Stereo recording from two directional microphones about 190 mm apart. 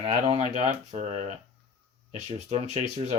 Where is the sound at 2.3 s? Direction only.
35° right (ahead or behind).